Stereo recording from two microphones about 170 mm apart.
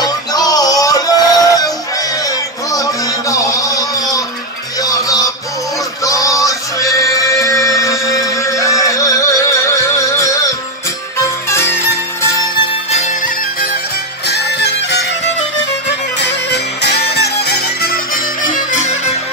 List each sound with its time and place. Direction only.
0.0 s music: 20° left (ahead or behind)
14.2 s music: 80° left
16.2 s music: 80° left; by 19.1 s 45° left (ahead or behind)